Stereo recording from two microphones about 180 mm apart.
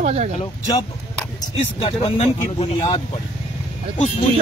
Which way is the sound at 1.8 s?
30° left (ahead or behind).